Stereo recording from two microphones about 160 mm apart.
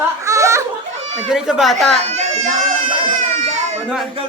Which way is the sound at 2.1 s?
45° right (ahead or behind).